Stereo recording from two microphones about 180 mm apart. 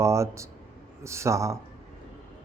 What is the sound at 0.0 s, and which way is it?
A man's voice, 15° right (ahead or behind).